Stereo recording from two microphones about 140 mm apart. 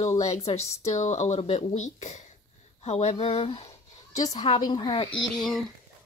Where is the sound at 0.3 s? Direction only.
50° left (ahead or behind).